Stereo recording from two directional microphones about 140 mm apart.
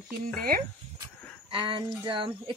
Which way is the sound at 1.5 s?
35° right (ahead or behind).